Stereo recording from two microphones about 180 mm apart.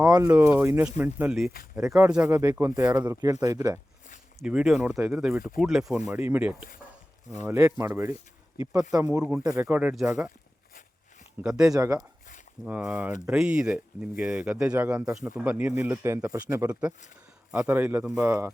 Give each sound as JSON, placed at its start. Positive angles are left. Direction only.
{"t": 0.0, "sound": "speech", "side_deg": -15}
{"t": 2.4, "sound": "speech", "side_deg": -15}
{"t": 4.4, "sound": "speech", "side_deg": -5}
{"t": 5.5, "sound": "speech", "side_deg": 0}
{"t": 11.4, "sound": "speech", "side_deg": -10}
{"t": 12.6, "sound": "speech", "side_deg": -10}